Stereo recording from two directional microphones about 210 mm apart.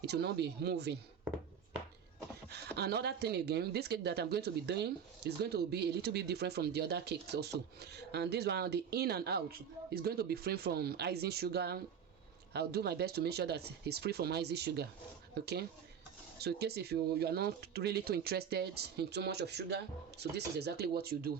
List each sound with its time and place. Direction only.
0.0 s speech: 50° right (ahead or behind)
2.7 s speech: 50° right (ahead or behind)